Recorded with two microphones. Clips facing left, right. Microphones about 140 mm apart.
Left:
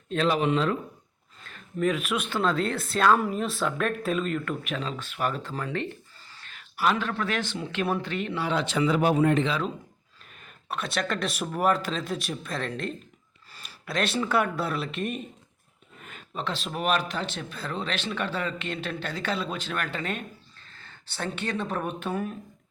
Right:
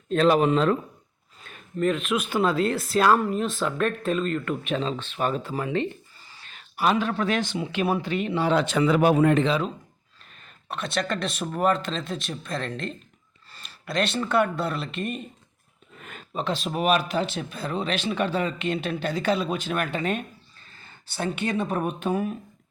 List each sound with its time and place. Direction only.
0.1 s speech: 45° right (ahead or behind)
1.8 s speech: centre (ahead or behind)
2.3 s speech: 10° right (ahead or behind)
4.6 s speech: 30° right (ahead or behind)
5.4 s speech: 15° right (ahead or behind)
6.3 s a sound: 15° right (ahead or behind)
6.6 s speech: 20° right (ahead or behind)
8.5 s speech: 50° right (ahead or behind)
9.0 s speech: 80° right
10.4 s speech: 5° left (ahead or behind)
16.3 s speech: 15° right (ahead or behind)